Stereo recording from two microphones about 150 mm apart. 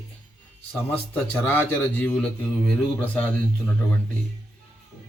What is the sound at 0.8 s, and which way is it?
A man's voice, 10° left (ahead or behind).